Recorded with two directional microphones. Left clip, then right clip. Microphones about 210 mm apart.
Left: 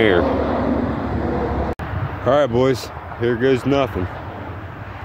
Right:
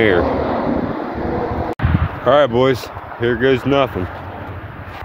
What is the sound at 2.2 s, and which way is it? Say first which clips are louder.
Speech: right 3 dB; centre (ahead or behind).